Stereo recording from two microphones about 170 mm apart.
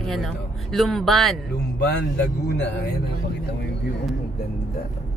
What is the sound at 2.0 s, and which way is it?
Speech, 85° left.